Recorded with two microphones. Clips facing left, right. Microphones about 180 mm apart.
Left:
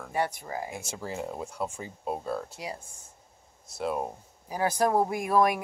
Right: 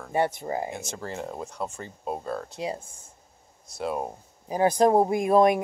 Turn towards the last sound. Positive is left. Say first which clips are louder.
# right 5 dB
turn(degrees=-25)  # may be behind; listen again after turning